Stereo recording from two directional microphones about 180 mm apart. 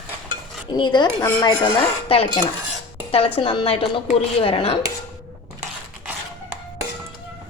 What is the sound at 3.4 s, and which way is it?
Frying, 30° left (ahead or behind).